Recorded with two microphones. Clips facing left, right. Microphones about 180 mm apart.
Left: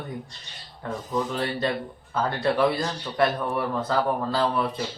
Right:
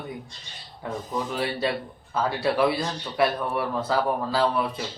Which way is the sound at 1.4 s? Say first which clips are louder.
Even; 5° right (ahead or behind).